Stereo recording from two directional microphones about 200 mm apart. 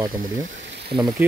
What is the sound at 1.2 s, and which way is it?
Speech, 10° right (ahead or behind).